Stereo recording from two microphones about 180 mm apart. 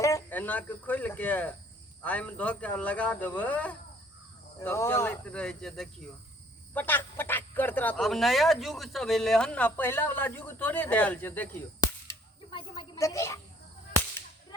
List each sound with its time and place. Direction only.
0.0 s speech: 15° left (ahead or behind)
12.5 s a woman's voice: 25° left (ahead or behind)